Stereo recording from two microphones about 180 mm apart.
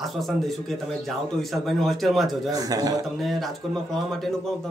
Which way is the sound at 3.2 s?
Centre (ahead or behind).